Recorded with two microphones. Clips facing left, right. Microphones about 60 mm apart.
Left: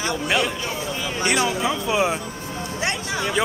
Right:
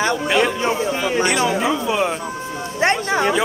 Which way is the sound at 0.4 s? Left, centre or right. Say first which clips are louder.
Right 7 dB; right.